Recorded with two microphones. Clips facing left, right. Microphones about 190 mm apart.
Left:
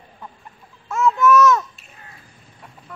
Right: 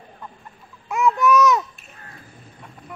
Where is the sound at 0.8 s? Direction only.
15° right (ahead or behind).